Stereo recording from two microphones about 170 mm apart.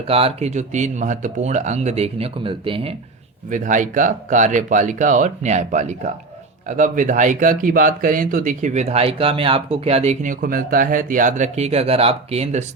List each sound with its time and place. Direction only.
0.1 s speech: 35° right (ahead or behind)
3.5 s speech: 50° right (ahead or behind)
10.4 s speech: 55° right (ahead or behind); by 12.6 s 40° right (ahead or behind)